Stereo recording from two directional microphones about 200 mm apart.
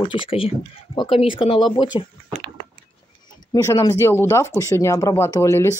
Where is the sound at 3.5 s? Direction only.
20° left (ahead or behind).